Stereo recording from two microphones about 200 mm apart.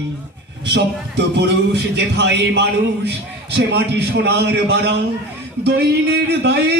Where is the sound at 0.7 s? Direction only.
60° right (ahead or behind).